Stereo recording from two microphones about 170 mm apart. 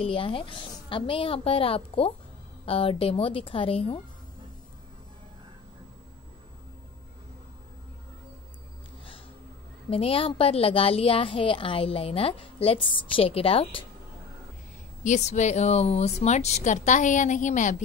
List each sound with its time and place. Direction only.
0.0 s a woman's voice: 30° left (ahead or behind)
9.8 s a woman's voice: 35° left (ahead or behind)
15.0 s a woman's voice: 45° left (ahead or behind)